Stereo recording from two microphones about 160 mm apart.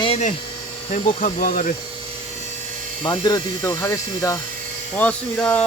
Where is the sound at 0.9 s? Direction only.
45° left (ahead or behind).